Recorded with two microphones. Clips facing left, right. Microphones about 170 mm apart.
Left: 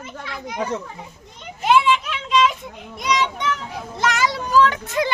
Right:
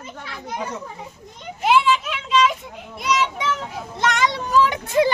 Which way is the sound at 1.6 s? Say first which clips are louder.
Left 1 dB; 5° right (ahead or behind).